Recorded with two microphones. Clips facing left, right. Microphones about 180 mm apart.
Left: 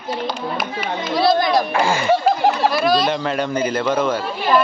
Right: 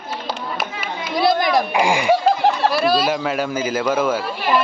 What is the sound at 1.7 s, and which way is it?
Speech, 15° right (ahead or behind).